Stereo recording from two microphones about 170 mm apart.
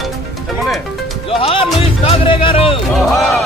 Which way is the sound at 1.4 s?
35° left (ahead or behind).